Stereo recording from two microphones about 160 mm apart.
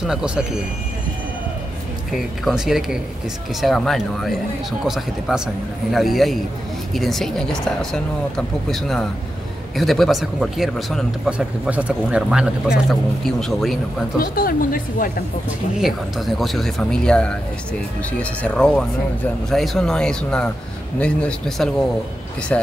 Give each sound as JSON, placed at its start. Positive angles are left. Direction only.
{"t": 0.0, "sound": "speech", "side_deg": -5}
{"t": 2.1, "sound": "speech", "side_deg": 0}
{"t": 14.2, "sound": "speech", "side_deg": 60}
{"t": 15.8, "sound": "speech", "side_deg": 0}